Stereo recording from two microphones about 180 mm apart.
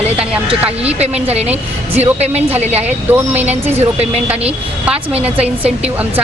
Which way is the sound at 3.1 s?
10° right (ahead or behind).